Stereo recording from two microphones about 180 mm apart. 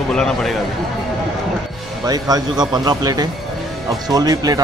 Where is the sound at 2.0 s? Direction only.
20° right (ahead or behind).